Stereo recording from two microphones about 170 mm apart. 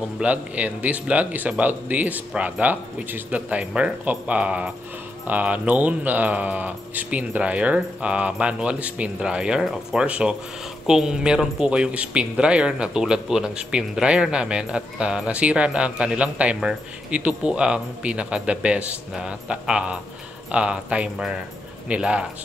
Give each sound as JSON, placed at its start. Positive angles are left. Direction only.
{"t": 0.2, "sound": "speech", "side_deg": -10}